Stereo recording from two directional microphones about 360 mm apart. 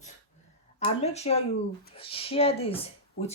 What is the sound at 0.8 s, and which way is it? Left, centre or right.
Speech, centre.